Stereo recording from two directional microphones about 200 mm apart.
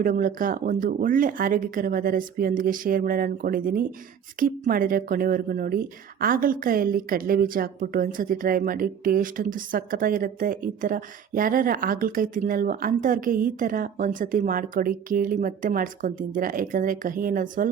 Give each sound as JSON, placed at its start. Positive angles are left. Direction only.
{"t": 0.0, "sound": "speech", "side_deg": -45}